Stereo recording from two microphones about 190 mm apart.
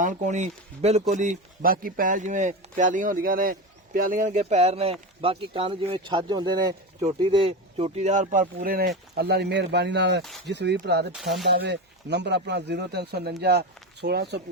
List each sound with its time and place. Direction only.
0.0 s speech: 40° right (ahead or behind); by 10.2 s 65° right (ahead or behind)
10.2 s speech: centre (ahead or behind)
10.5 s speech: 60° right (ahead or behind)
11.1 s speech: centre (ahead or behind)
11.4 s speech: 60° right (ahead or behind)